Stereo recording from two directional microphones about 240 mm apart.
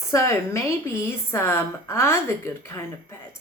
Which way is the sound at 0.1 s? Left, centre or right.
Centre.